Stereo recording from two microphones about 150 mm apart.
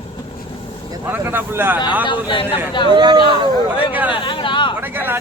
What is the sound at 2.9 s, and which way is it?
Speech, 30° right (ahead or behind).